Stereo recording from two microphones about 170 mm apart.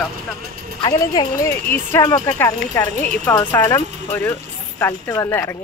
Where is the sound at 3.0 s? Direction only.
10° left (ahead or behind).